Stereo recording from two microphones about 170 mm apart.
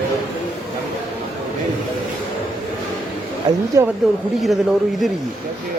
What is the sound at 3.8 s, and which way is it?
Speech, 20° right (ahead or behind).